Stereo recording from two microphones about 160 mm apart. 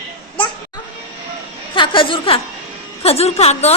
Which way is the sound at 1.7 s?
30° left (ahead or behind).